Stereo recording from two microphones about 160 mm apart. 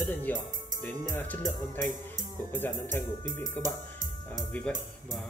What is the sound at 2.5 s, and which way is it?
Speech, 15° left (ahead or behind).